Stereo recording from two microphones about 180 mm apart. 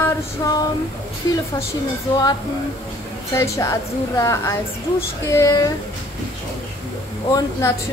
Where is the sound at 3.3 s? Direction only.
15° left (ahead or behind).